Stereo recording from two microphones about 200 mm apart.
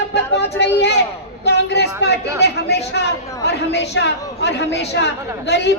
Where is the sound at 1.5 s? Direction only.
55° left (ahead or behind).